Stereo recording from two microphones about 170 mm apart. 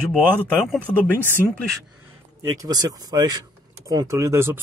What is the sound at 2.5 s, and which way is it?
Speech, 20° right (ahead or behind).